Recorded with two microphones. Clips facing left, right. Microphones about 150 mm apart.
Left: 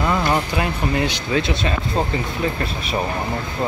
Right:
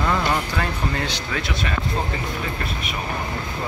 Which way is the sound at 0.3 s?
15° left (ahead or behind).